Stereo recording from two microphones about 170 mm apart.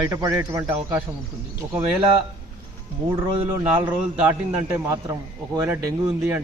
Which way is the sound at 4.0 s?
10° right (ahead or behind).